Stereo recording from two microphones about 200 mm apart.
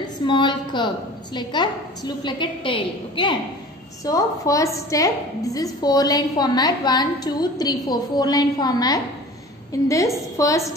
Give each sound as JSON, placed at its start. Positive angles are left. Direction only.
{"t": 0.0, "sound": "a woman's voice", "side_deg": 20}